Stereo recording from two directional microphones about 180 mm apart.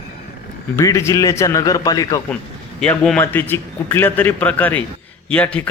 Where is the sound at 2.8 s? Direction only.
10° left (ahead or behind).